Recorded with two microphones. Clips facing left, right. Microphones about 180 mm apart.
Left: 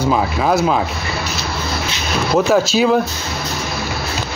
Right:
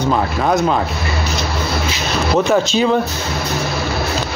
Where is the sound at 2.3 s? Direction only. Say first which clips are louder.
Left 1 dB; 5° left (ahead or behind).